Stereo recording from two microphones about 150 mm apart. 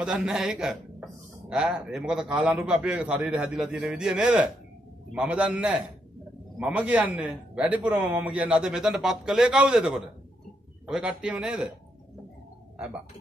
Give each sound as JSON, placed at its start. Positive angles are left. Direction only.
{"t": 0.0, "sound": "a man's voice", "side_deg": -5}
{"t": 12.7, "sound": "speech", "side_deg": -10}